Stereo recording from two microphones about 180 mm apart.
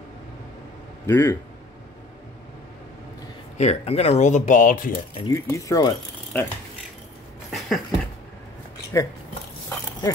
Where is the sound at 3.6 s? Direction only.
35° left (ahead or behind).